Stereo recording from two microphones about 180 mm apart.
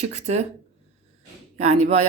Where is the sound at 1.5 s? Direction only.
35° right (ahead or behind).